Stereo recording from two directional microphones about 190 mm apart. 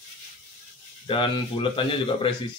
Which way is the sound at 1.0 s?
25° left (ahead or behind).